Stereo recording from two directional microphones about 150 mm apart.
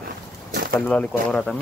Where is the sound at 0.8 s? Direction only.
10° left (ahead or behind).